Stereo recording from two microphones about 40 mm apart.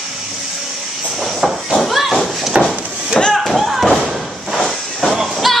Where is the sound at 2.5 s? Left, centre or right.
Right.